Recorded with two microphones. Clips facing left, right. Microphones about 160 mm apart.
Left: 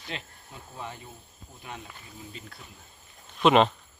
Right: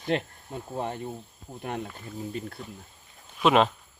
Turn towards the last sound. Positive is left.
turn(degrees=-5)  # may be behind; listen again after turning